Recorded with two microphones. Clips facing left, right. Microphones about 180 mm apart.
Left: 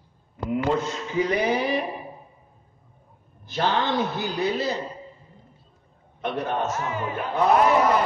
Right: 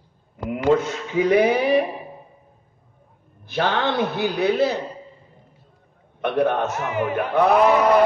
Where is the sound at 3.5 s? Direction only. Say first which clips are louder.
Right 2 dB; 60° right (ahead or behind).